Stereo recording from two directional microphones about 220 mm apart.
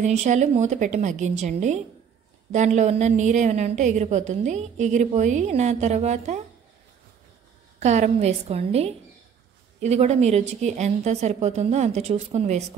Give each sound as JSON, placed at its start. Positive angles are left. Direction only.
{"t": 0.0, "sound": "a woman's voice", "side_deg": -30}
{"t": 7.8, "sound": "a woman's voice", "side_deg": -30}